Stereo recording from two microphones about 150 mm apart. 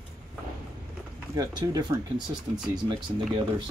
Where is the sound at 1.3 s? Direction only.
30° right (ahead or behind).